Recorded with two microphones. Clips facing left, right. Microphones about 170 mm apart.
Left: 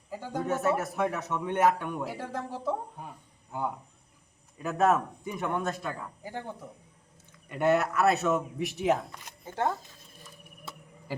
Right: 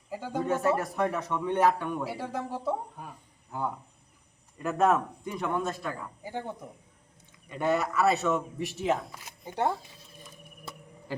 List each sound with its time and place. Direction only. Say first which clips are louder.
0.3 s a man's voice: right 1 dB; 5° left (ahead or behind)
2.0 s speech: right 2 dB; 10° right (ahead or behind)
4.5 s a man's voice: even; centre (ahead or behind)
5.3 s speech: even; 15° left (ahead or behind)
5.6 s a man's voice: even; centre (ahead or behind)
6.2 s speech: right 3 dB; 10° right (ahead or behind)
7.4 s a man's voice: left 2 dB; 5° left (ahead or behind)
9.4 s speech: right 1 dB; 15° right (ahead or behind)